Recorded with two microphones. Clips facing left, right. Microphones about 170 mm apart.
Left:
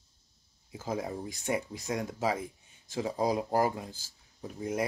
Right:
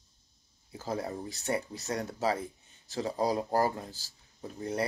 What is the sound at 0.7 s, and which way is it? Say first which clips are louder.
Speech: even; 10° left (ahead or behind).